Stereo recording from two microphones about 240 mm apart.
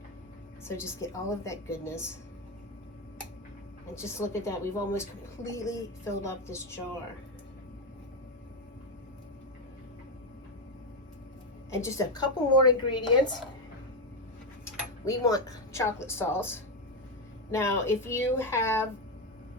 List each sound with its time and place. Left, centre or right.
0.6 s a woman's voice: centre
3.9 s a woman's voice: centre
11.7 s a woman's voice: centre
15.0 s a woman's voice: centre